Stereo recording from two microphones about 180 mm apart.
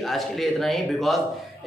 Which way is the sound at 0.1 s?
Centre (ahead or behind).